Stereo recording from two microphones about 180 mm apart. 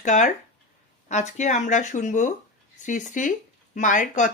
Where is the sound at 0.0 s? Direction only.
45° left (ahead or behind).